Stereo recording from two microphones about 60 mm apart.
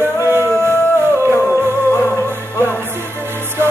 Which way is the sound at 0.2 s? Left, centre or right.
Right.